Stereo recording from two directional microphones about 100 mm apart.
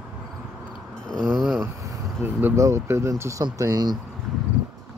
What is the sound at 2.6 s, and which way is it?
Speech, 30° right (ahead or behind).